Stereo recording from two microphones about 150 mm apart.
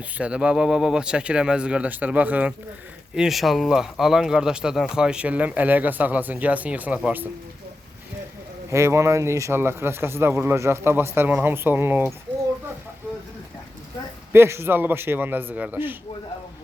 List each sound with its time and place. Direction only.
0.2 s speech: 5° right (ahead or behind)
8.7 s speech: 20° right (ahead or behind)
14.3 s speech: 15° right (ahead or behind)